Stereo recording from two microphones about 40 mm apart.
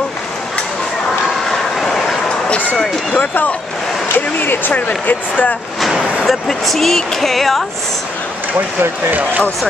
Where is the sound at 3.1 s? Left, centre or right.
Left.